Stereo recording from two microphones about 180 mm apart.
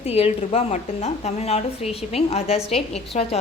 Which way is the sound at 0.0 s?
35° left (ahead or behind).